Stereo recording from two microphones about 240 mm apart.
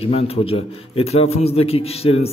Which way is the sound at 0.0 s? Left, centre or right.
Left.